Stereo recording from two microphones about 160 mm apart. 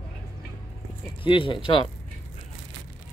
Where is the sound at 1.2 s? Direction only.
30° left (ahead or behind).